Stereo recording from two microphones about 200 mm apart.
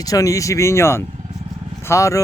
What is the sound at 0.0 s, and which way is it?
Speech, 15° left (ahead or behind).